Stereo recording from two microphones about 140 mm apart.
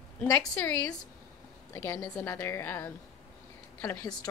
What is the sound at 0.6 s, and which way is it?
A woman's voice, 15° left (ahead or behind).